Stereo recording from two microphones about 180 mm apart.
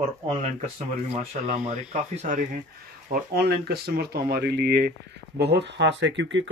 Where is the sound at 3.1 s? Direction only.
60° right (ahead or behind).